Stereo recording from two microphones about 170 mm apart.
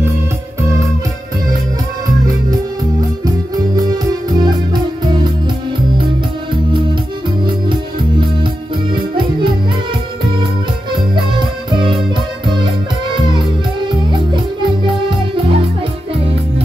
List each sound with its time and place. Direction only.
3.5 s music: 25° right (ahead or behind)
8.9 s music: 30° right (ahead or behind)
10.9 s music: 30° right (ahead or behind)
14.3 s music: 25° right (ahead or behind)